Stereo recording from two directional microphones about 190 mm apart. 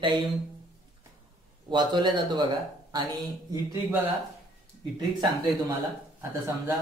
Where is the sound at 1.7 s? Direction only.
25° right (ahead or behind).